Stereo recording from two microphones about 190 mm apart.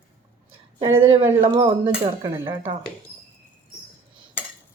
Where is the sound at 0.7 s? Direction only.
30° right (ahead or behind).